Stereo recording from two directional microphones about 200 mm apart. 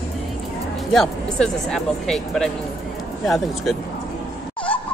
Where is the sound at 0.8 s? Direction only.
Centre (ahead or behind).